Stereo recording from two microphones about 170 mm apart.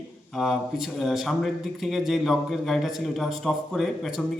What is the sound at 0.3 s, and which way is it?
A man's voice, centre (ahead or behind).